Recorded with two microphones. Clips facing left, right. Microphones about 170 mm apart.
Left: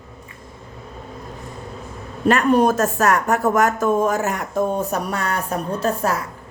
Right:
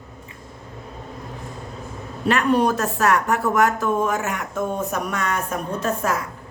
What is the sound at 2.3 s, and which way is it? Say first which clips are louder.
Speech: left 3 dB; 45° left (ahead or behind).